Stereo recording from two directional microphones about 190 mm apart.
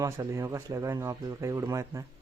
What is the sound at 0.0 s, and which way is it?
Speech, 15° right (ahead or behind).